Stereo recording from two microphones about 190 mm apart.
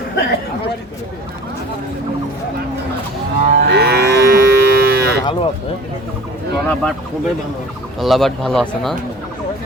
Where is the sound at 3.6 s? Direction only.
60° right (ahead or behind).